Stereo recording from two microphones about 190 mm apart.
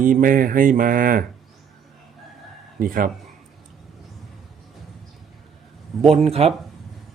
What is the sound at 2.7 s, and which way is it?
Speech, 45° right (ahead or behind).